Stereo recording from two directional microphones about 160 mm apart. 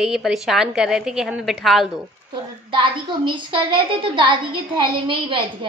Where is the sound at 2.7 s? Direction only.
30° right (ahead or behind).